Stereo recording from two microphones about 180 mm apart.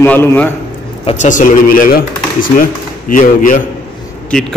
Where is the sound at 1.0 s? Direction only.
40° left (ahead or behind).